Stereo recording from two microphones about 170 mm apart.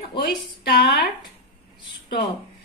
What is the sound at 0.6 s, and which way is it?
Speech, 80° left.